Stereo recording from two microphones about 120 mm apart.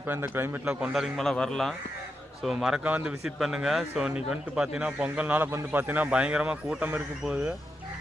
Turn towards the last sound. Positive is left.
turn(degrees=-10)  # may be behind; listen again after turning